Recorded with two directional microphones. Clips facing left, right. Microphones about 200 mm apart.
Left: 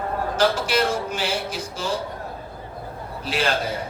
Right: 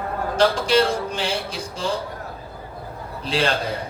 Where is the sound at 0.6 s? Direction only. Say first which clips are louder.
Right 3 dB; 30° right (ahead or behind).